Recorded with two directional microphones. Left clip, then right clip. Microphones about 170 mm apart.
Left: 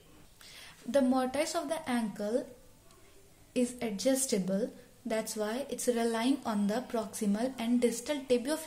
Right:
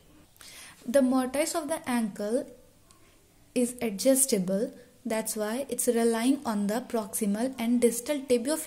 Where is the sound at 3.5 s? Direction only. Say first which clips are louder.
Right 4 dB; 35° right (ahead or behind).